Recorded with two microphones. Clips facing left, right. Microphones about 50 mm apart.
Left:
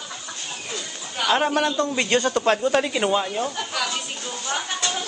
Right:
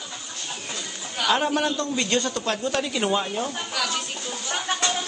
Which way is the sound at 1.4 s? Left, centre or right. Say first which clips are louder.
Left 3 dB; centre.